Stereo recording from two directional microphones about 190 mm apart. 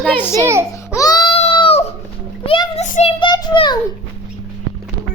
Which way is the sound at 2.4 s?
30° left (ahead or behind).